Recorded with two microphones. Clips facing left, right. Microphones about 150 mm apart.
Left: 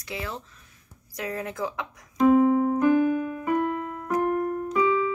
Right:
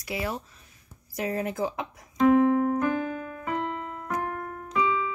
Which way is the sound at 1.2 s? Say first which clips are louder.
Right 2 dB; 25° right (ahead or behind).